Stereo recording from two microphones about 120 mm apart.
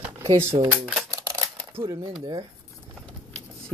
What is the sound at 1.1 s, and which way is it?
Typewriter, 25° right (ahead or behind).